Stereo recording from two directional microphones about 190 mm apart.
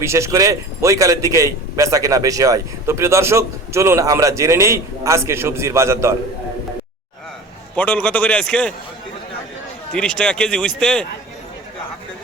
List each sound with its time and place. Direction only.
0.0 s a man's voice: 15° right (ahead or behind)
7.8 s a man's voice: 5° left (ahead or behind)
9.9 s a man's voice: 5° left (ahead or behind)